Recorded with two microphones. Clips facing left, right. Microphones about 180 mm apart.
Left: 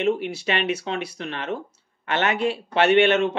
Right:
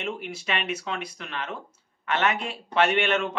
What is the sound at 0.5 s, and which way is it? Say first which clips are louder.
Speech: left 5 dB; 35° left (ahead or behind).